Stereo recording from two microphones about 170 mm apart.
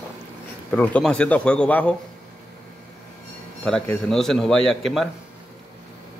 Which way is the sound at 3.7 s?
5° left (ahead or behind).